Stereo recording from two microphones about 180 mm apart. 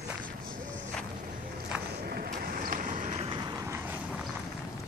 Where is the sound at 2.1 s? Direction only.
55° right (ahead or behind).